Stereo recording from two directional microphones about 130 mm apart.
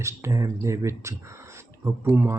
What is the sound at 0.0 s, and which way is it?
Speech, 25° right (ahead or behind).